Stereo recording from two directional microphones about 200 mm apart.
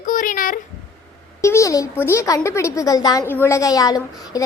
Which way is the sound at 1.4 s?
15° left (ahead or behind).